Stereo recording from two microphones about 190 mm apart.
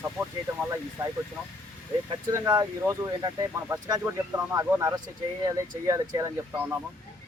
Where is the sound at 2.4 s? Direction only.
20° right (ahead or behind).